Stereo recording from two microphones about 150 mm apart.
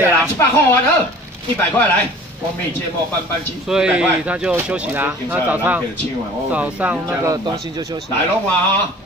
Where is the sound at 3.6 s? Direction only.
5° right (ahead or behind).